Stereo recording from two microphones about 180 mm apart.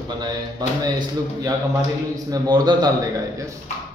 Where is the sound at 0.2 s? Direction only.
25° right (ahead or behind).